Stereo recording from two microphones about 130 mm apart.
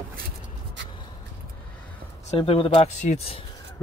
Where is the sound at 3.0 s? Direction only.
60° left (ahead or behind).